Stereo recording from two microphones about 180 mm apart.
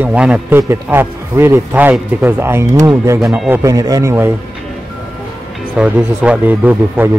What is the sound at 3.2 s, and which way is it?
Speech, centre (ahead or behind).